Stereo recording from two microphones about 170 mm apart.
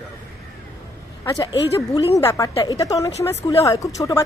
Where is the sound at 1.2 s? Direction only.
25° left (ahead or behind).